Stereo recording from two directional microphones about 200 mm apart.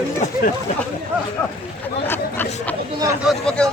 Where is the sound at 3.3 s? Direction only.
5° left (ahead or behind).